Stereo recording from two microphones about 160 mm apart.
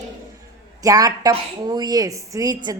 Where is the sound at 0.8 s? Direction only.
20° right (ahead or behind).